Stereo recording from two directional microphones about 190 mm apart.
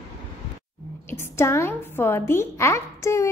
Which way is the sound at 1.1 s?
15° left (ahead or behind).